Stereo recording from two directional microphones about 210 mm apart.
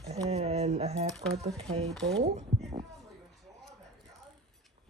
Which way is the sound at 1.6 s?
30° right (ahead or behind).